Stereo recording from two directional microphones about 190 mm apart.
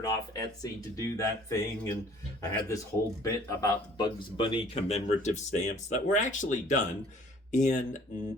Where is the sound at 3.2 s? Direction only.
20° left (ahead or behind).